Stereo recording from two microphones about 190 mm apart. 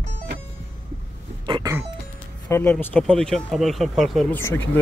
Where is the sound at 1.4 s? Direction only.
25° right (ahead or behind).